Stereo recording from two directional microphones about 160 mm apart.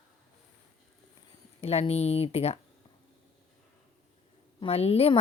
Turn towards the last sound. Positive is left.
turn(degrees=40)  # may be behind; listen again after turning